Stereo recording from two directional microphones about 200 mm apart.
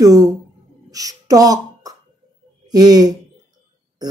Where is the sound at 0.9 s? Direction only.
20° right (ahead or behind).